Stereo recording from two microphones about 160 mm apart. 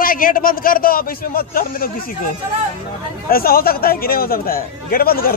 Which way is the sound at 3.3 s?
70° left (ahead or behind).